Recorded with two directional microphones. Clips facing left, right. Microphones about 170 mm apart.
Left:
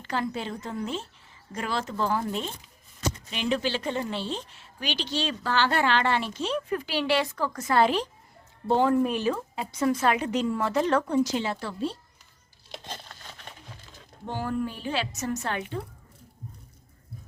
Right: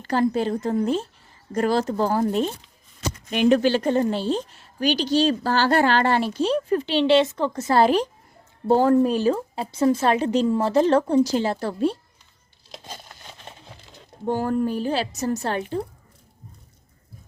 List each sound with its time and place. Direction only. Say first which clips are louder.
0.0 s a woman's voice: right 9 dB; 40° right (ahead or behind)
3.2 s a woman's voice: right 11 dB; 55° right (ahead or behind); by 11.7 s 40° right (ahead or behind)
12.6 s crumpling: even; centre (ahead or behind)
13.1 s a sound: right 2 dB; 20° right (ahead or behind)
14.3 s a woman's voice: right 7 dB; 45° right (ahead or behind)